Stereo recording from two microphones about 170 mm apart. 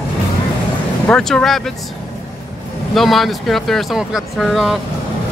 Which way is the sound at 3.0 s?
Centre (ahead or behind).